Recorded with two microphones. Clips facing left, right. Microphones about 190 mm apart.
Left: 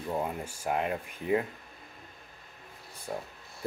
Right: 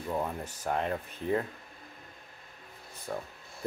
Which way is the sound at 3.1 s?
20° left (ahead or behind).